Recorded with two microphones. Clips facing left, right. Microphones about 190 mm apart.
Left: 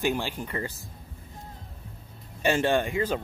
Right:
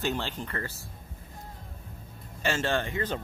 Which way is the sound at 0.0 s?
10° left (ahead or behind).